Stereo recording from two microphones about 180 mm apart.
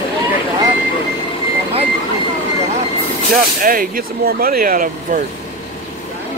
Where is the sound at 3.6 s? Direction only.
50° right (ahead or behind).